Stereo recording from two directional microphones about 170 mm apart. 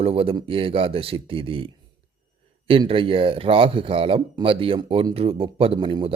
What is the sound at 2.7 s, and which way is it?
Speech, 30° right (ahead or behind).